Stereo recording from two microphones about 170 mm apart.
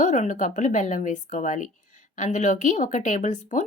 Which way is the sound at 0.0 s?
45° left (ahead or behind).